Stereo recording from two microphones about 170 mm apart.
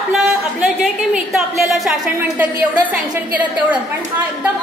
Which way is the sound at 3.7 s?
10° right (ahead or behind).